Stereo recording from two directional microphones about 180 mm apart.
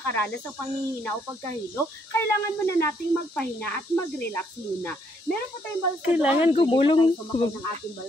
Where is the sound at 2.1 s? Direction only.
15° left (ahead or behind).